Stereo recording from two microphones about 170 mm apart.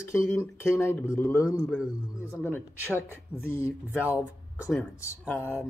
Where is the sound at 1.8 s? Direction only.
5° right (ahead or behind).